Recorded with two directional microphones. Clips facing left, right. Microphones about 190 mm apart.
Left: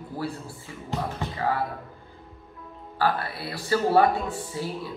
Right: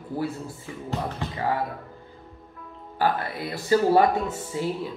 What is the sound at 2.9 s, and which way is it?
Speech, 15° right (ahead or behind).